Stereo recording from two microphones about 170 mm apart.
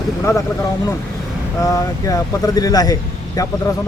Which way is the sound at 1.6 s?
20° left (ahead or behind).